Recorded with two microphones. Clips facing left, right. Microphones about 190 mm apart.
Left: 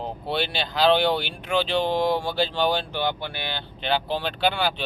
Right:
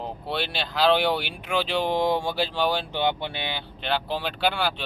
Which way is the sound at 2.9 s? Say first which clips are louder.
Right 1 dB; 20° right (ahead or behind).